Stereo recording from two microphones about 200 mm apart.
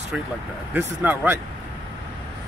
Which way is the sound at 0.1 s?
5° right (ahead or behind).